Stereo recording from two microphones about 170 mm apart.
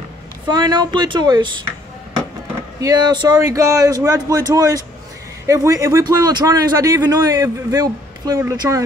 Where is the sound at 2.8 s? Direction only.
25° right (ahead or behind).